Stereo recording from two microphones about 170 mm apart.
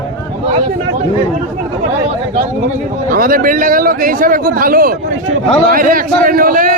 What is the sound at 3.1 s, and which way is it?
A man's voice, 55° right (ahead or behind).